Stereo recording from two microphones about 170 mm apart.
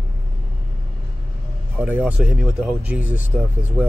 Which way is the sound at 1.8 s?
10° right (ahead or behind).